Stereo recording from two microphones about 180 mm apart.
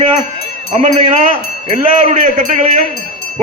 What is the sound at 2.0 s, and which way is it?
Speech, 45° right (ahead or behind).